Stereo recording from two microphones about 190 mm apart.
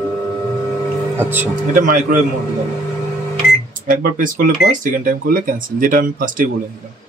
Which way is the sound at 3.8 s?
45° right (ahead or behind).